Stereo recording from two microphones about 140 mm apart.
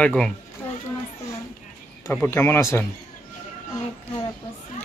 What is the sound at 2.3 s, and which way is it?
Speech, 15° left (ahead or behind).